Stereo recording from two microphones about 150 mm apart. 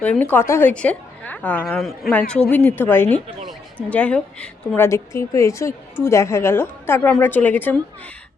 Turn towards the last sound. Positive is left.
turn(degrees=10)  # may be behind; listen again after turning